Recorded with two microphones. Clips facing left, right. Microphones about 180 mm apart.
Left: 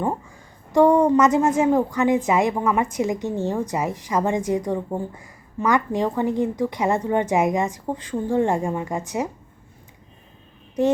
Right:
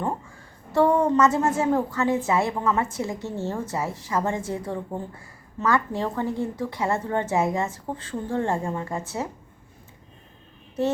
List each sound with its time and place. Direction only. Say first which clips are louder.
0.0 s a woman's voice: left 3 dB; 15° left (ahead or behind)